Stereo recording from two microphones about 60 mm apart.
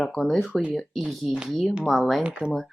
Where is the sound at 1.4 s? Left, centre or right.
Centre.